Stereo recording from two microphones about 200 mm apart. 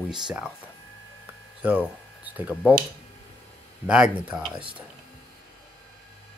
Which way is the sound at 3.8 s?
5° right (ahead or behind).